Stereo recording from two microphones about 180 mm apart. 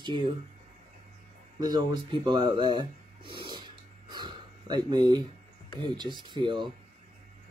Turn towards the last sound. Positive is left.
turn(degrees=-25)  # may be behind; listen again after turning